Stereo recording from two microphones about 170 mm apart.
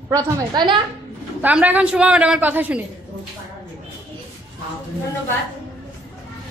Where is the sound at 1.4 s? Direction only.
10° right (ahead or behind).